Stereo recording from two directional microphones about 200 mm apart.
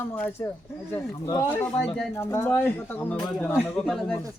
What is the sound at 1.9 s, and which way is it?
A woman's voice, 15° left (ahead or behind).